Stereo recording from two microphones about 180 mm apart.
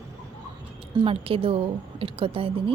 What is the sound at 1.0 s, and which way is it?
A woman's voice, 30° right (ahead or behind).